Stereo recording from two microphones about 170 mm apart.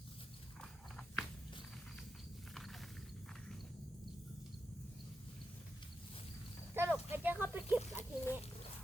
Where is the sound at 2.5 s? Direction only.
Centre (ahead or behind).